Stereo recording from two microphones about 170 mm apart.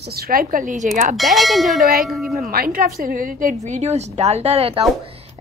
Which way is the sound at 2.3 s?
60° right (ahead or behind).